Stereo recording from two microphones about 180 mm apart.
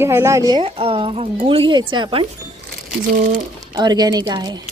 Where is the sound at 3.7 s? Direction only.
20° right (ahead or behind).